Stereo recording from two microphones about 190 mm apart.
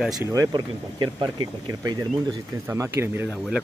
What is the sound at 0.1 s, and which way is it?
Speech, 20° right (ahead or behind).